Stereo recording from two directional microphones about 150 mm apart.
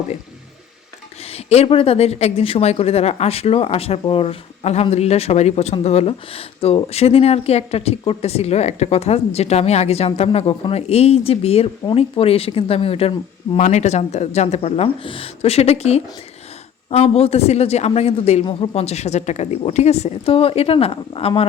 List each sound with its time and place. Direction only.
1.3 s a woman's voice: 45° left (ahead or behind)
13.6 s a woman's voice: 55° left (ahead or behind)